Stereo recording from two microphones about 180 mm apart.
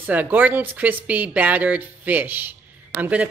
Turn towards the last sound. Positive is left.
turn(degrees=-5)  # may be behind; listen again after turning